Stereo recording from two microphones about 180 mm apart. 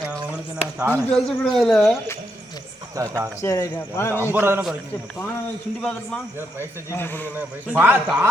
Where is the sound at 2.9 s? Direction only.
15° right (ahead or behind).